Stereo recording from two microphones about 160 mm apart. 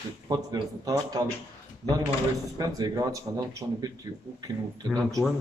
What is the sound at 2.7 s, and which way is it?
Speech, 20° right (ahead or behind).